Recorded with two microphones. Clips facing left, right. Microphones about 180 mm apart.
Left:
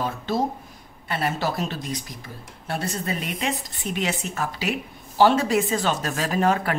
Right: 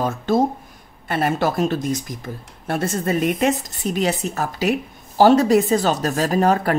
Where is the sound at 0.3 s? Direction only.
50° right (ahead or behind).